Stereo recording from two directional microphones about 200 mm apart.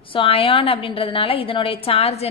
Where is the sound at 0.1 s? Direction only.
25° left (ahead or behind).